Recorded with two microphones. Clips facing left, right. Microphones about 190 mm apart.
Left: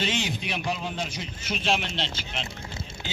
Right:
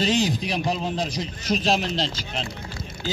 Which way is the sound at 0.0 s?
35° right (ahead or behind).